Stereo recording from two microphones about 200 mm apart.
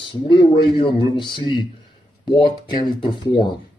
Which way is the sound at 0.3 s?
25° left (ahead or behind).